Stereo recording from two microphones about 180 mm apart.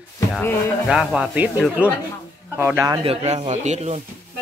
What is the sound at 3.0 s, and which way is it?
Speech, 30° right (ahead or behind).